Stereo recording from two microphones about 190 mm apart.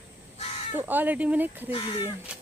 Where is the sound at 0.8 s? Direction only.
10° right (ahead or behind).